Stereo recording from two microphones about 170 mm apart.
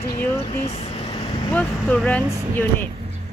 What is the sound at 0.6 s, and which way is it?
Speech, 35° left (ahead or behind).